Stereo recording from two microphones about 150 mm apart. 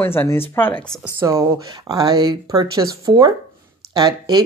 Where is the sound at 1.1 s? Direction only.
20° right (ahead or behind).